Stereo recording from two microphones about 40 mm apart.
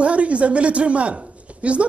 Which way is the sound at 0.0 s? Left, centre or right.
Right.